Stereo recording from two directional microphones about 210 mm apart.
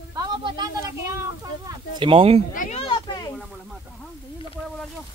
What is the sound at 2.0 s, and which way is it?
Speech, 25° right (ahead or behind).